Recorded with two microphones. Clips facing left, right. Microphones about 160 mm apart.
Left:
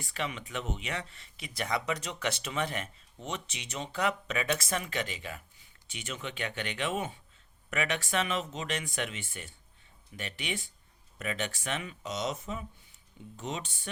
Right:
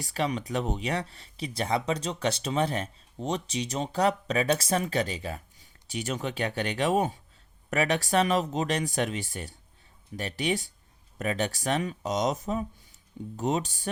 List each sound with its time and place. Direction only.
0.0 s speech: 35° right (ahead or behind)